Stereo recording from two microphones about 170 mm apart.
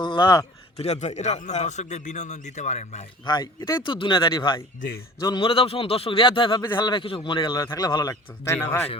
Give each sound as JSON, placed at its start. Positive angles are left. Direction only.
{"t": 0.0, "sound": "a man's voice", "side_deg": 25}
{"t": 0.8, "sound": "a man's voice", "side_deg": 40}
{"t": 3.2, "sound": "a man's voice", "side_deg": 25}
{"t": 8.5, "sound": "speech", "side_deg": 10}